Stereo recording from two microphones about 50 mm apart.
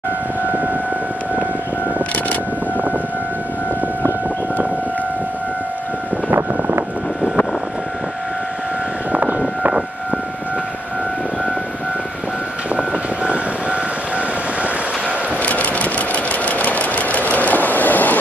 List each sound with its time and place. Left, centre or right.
12.7 s vehicle: right
15.4 s sewing machine: left